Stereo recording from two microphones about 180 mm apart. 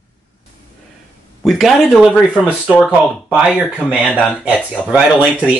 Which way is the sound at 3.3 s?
5° right (ahead or behind).